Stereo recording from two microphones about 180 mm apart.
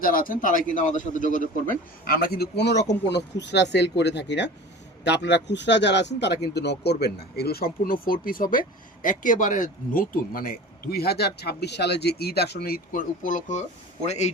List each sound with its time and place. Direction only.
0.0 s a man's voice: 50° left (ahead or behind)